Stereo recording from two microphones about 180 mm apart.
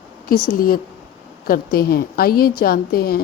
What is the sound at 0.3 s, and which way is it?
A woman's voice, 50° left (ahead or behind).